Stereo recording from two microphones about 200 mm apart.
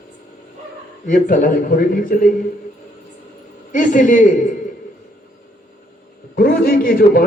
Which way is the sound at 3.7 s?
40° left (ahead or behind).